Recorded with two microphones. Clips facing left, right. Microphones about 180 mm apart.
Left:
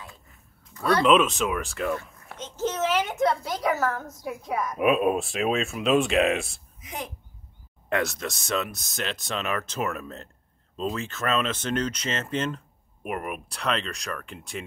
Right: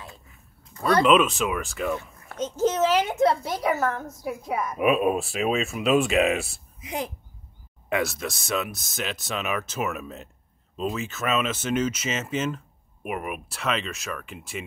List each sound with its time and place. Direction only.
1.0 s speech: centre (ahead or behind)
2.3 s a sound: 40° right (ahead or behind)
3.4 s speech: 5° right (ahead or behind)
7.9 s speech: 5° right (ahead or behind)